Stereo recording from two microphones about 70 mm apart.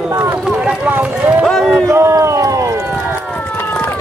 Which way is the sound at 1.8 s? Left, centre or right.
Right.